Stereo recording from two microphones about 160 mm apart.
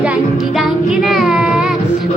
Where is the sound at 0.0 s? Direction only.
5° right (ahead or behind).